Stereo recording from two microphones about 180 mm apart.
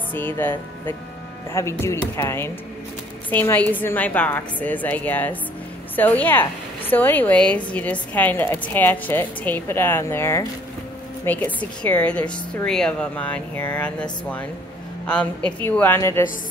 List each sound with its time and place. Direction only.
0.1 s a woman's voice: 10° left (ahead or behind)
15.0 s a woman's voice: 5° left (ahead or behind)